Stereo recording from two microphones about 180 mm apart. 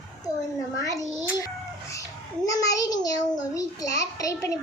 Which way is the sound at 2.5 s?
20° left (ahead or behind).